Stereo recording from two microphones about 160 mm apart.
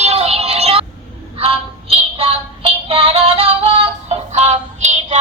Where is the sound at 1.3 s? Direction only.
35° right (ahead or behind).